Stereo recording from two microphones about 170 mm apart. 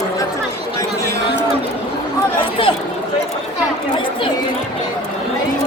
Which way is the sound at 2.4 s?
30° left (ahead or behind).